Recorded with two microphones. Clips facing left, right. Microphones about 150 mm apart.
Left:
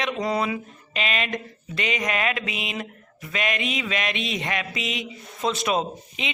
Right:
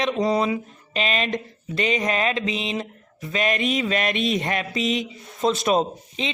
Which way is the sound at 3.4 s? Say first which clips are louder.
Right 5 dB; 40° right (ahead or behind).